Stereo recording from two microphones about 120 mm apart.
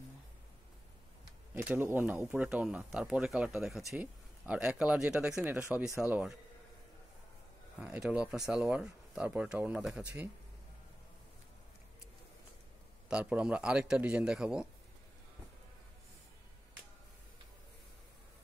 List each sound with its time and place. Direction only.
1.6 s a man's voice: 15° right (ahead or behind)
5.4 s speech: 20° right (ahead or behind)
5.9 s a man's voice: 10° right (ahead or behind)
7.8 s a man's voice: 10° right (ahead or behind)
13.1 s a man's voice: 10° right (ahead or behind)